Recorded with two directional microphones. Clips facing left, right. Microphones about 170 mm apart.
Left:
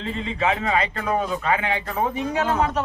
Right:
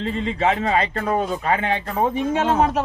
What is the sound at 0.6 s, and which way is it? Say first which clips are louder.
Speech: right 2 dB; 40° right (ahead or behind).